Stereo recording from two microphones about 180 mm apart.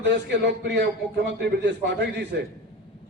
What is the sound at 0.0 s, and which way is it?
A man's voice, 75° right (ahead or behind).